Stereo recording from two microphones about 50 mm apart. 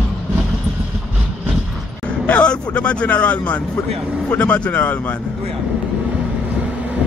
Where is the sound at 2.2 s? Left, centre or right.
Left.